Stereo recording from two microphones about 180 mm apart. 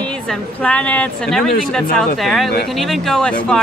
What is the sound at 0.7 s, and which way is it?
Speech, 5° left (ahead or behind).